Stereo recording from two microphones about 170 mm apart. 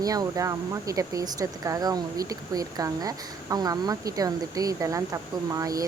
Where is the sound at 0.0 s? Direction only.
20° right (ahead or behind).